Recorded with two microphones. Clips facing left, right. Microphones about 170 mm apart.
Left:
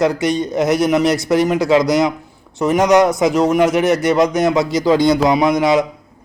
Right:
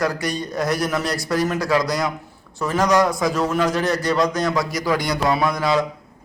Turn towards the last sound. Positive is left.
turn(degrees=20)  # may be behind; listen again after turning